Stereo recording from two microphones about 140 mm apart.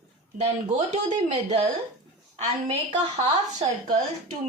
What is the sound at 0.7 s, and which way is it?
Speech, 55° right (ahead or behind).